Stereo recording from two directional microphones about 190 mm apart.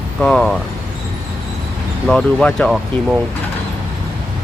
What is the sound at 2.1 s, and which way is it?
Speech, 5° left (ahead or behind).